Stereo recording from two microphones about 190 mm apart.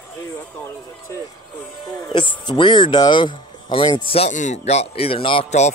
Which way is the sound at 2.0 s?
25° left (ahead or behind).